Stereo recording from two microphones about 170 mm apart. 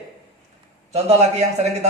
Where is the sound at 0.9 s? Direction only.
40° right (ahead or behind).